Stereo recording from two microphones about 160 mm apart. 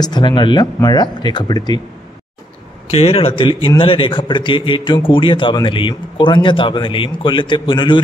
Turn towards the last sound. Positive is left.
turn(degrees=30)  # may be behind; listen again after turning